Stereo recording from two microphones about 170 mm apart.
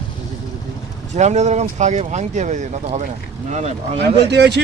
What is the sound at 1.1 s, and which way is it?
Speech, 45° right (ahead or behind).